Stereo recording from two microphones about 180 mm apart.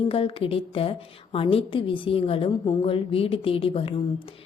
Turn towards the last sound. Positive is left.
turn(degrees=30)  # may be behind; listen again after turning